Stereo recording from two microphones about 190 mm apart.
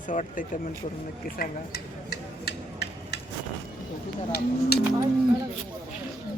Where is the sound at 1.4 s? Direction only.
55° left (ahead or behind).